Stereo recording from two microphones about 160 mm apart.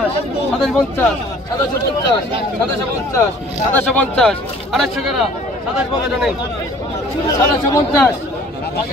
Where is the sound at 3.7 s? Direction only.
10° left (ahead or behind).